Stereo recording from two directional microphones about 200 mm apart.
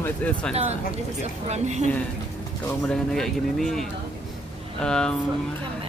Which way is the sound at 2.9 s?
Centre (ahead or behind).